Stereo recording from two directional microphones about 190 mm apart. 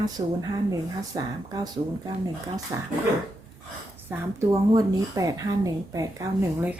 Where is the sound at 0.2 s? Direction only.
25° right (ahead or behind).